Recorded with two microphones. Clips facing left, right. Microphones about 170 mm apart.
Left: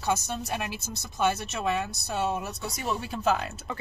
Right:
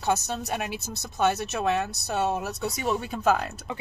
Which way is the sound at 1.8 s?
60° right (ahead or behind).